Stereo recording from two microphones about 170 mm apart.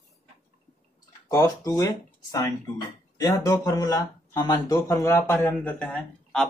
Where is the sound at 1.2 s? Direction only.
20° left (ahead or behind).